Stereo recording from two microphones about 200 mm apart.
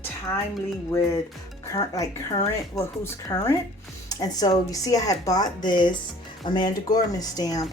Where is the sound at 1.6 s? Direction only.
15° left (ahead or behind).